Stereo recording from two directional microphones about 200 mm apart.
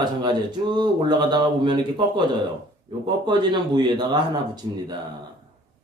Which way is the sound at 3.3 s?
20° right (ahead or behind).